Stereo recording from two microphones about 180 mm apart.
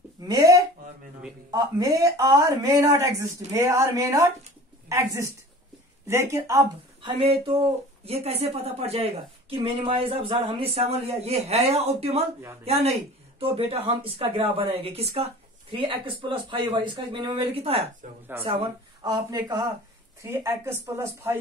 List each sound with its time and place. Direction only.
0.2 s a sound: 20° right (ahead or behind)
1.5 s a woman's voice: 20° right (ahead or behind)
8.0 s speech: 35° right (ahead or behind)
18.3 s speech: 10° right (ahead or behind)
19.0 s speech: 25° right (ahead or behind)